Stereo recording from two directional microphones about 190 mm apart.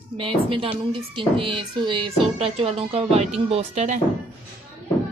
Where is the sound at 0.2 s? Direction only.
30° right (ahead or behind).